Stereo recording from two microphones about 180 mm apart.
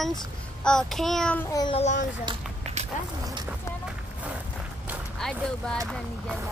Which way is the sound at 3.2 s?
20° right (ahead or behind).